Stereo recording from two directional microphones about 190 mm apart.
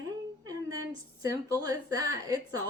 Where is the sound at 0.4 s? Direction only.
20° right (ahead or behind).